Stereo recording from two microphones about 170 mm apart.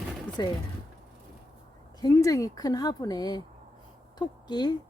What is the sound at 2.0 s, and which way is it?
Speech, 20° left (ahead or behind).